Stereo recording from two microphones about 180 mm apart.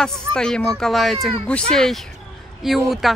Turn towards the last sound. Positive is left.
turn(degrees=0)  # may be behind; listen again after turning